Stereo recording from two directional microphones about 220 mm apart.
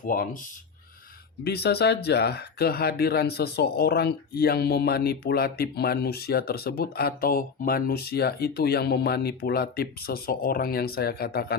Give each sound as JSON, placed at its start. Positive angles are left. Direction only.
{"t": 0.0, "sound": "speech", "side_deg": 40}
{"t": 1.5, "sound": "speech", "side_deg": 50}